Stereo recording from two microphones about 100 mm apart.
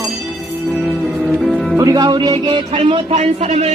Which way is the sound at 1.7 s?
40° right (ahead or behind).